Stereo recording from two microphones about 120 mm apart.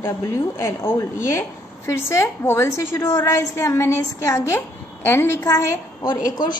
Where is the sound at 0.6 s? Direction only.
20° left (ahead or behind).